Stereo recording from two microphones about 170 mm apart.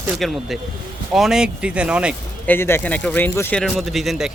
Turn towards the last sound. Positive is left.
turn(degrees=0)  # may be behind; listen again after turning